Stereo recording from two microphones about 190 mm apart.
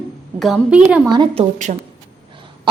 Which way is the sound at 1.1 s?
25° right (ahead or behind).